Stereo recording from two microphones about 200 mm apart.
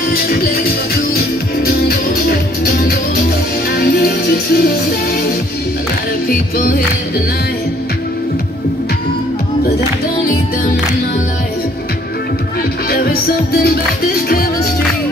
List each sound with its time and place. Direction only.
0.1 s music: 50° left (ahead or behind)
6.2 s music: 50° left (ahead or behind)
13.6 s music: 50° left (ahead or behind)